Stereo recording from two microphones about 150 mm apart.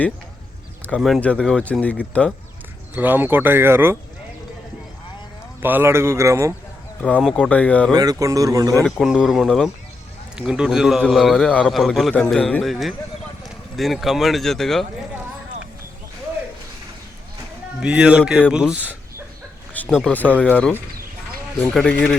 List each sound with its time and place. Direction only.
0.8 s speech: 5° left (ahead or behind)
2.9 s speech: 10° right (ahead or behind)
5.6 s speech: 15° right (ahead or behind)
7.1 s speech: 5° left (ahead or behind)
7.9 s a man's voice: 25° right (ahead or behind)
8.8 s a man's voice: centre (ahead or behind)
17.7 s a man's voice: 5° right (ahead or behind)
19.9 s a man's voice: centre (ahead or behind)